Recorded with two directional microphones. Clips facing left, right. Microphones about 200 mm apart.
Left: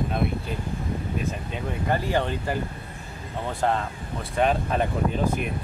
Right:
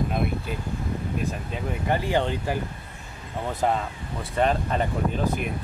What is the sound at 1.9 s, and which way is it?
Speech, 15° right (ahead or behind).